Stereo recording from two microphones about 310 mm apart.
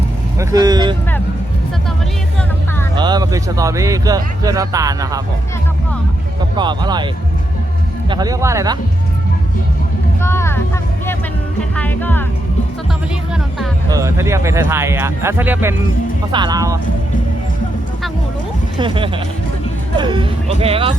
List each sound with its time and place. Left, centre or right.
0.3 s speech: centre
2.9 s speech: centre
6.6 s speech: centre
8.1 s speech: centre
10.2 s vehicle: centre
11.7 s speech: centre
13.3 s speech: centre
18.8 s speech: centre